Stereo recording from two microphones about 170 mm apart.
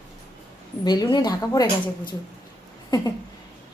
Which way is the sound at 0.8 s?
25° left (ahead or behind).